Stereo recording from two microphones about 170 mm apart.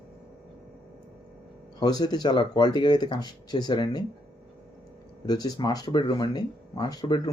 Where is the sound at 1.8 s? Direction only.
25° left (ahead or behind).